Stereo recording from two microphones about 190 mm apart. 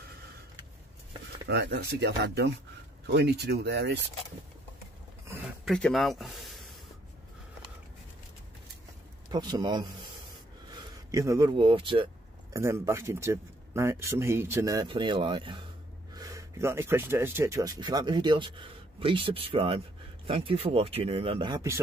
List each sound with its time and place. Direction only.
1.5 s speech: 65° right (ahead or behind)
5.7 s speech: 5° left (ahead or behind)
9.3 s speech: 20° right (ahead or behind)
12.5 s speech: 15° right (ahead or behind)